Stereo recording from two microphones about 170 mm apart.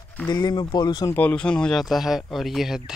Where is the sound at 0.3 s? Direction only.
25° left (ahead or behind).